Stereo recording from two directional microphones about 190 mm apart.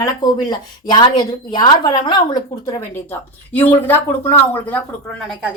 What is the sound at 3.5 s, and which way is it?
Speech, 10° left (ahead or behind).